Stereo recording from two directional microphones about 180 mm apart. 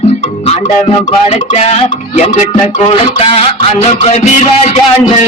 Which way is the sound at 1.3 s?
35° left (ahead or behind).